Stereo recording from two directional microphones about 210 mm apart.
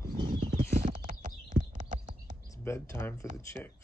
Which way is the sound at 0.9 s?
35° right (ahead or behind).